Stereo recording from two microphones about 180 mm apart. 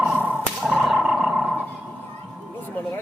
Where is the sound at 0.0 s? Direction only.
5° right (ahead or behind).